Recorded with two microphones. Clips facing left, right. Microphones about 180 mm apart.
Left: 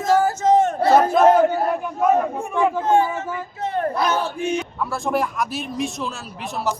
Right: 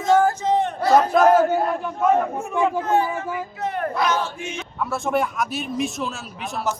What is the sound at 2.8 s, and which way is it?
Speech, 25° left (ahead or behind).